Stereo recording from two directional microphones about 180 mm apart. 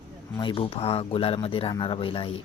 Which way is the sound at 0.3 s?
25° left (ahead or behind).